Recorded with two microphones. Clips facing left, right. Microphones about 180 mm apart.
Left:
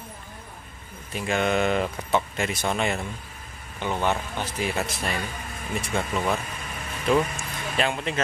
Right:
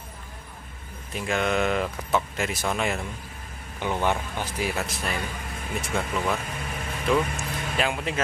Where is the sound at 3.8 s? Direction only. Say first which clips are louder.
Even; 10° right (ahead or behind).